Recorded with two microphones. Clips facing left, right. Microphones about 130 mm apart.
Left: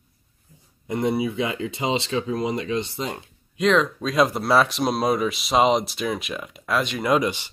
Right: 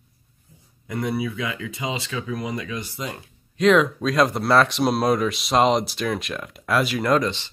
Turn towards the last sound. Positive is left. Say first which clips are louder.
# even
turn(degrees=10)  # may be behind; listen again after turning